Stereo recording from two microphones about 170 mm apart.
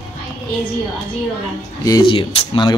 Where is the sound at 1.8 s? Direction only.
25° left (ahead or behind).